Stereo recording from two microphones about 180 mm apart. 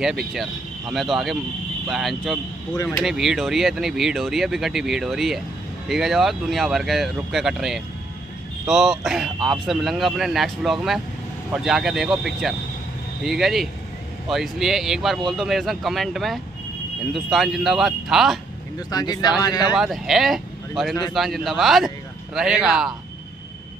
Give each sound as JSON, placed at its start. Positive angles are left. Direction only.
{"t": 0.0, "sound": "speech", "side_deg": 0}
{"t": 18.9, "sound": "speech", "side_deg": 20}
{"t": 19.8, "sound": "speech", "side_deg": 0}